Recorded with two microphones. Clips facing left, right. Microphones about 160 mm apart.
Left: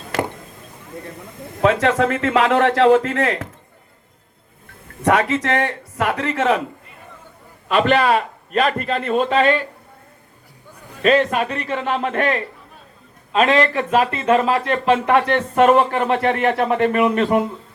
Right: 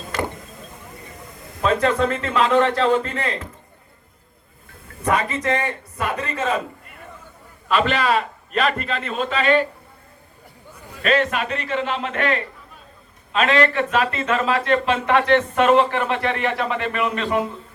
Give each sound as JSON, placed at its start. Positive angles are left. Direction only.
{"t": 1.6, "sound": "a man's voice", "side_deg": 80}
{"t": 5.0, "sound": "a man's voice", "side_deg": 85}
{"t": 7.7, "sound": "speech", "side_deg": 55}
{"t": 11.0, "sound": "speech", "side_deg": 35}